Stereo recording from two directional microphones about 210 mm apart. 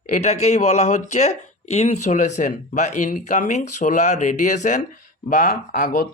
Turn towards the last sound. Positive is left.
turn(degrees=40)  # may be behind; listen again after turning